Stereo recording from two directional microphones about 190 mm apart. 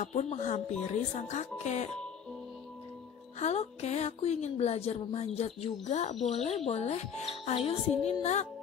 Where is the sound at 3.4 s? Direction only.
35° left (ahead or behind).